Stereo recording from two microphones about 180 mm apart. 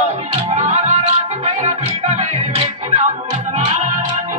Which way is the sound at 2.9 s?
45° right (ahead or behind).